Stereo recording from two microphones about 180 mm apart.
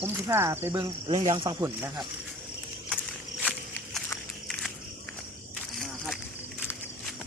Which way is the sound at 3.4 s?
Centre (ahead or behind).